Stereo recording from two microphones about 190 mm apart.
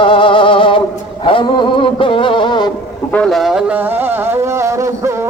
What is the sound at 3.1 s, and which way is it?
Speech, 5° left (ahead or behind).